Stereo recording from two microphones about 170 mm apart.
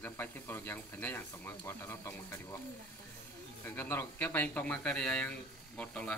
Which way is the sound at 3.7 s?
15° left (ahead or behind).